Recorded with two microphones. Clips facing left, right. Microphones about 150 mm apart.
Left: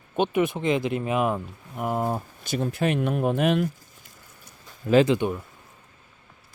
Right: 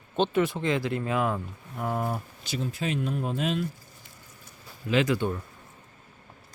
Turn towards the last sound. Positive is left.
turn(degrees=20)  # may be behind; listen again after turning